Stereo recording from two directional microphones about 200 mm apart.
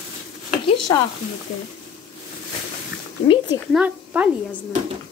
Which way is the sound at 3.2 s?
25° left (ahead or behind).